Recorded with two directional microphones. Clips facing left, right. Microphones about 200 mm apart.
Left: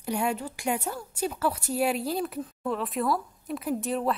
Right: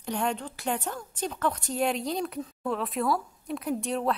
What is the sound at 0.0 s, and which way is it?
A woman's voice, 10° left (ahead or behind).